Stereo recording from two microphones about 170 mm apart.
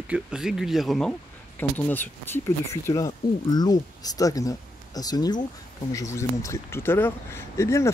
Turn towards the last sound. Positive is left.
turn(degrees=15)  # may be behind; listen again after turning